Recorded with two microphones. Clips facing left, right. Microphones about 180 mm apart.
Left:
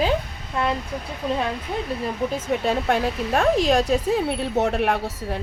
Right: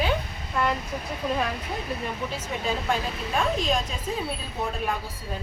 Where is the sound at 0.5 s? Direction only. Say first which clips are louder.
Left 2 dB; 30° left (ahead or behind).